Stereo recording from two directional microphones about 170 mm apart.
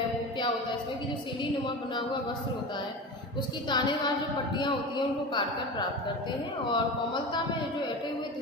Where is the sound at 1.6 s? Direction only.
25° left (ahead or behind).